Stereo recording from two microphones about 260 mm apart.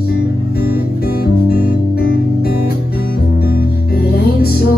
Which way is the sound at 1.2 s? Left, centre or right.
Left.